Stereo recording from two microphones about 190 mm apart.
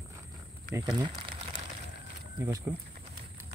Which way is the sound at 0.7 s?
20° right (ahead or behind).